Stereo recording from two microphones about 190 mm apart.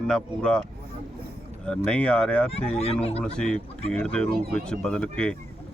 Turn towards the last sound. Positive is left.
turn(degrees=5)  # may be behind; listen again after turning